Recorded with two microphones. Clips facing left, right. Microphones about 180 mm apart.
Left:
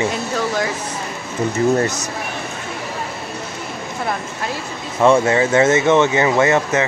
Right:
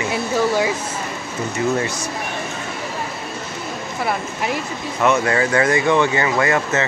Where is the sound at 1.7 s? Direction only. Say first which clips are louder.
Left 4 dB; 40° left (ahead or behind).